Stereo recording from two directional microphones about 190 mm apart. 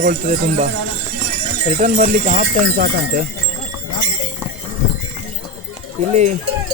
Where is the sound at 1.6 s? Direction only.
40° right (ahead or behind).